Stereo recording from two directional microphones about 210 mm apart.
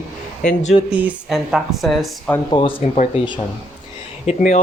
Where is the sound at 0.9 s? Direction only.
5° right (ahead or behind).